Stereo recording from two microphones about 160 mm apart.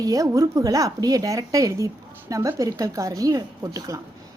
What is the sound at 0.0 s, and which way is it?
Speech, 20° right (ahead or behind).